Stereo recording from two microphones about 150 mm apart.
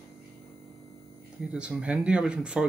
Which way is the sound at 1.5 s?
5° right (ahead or behind).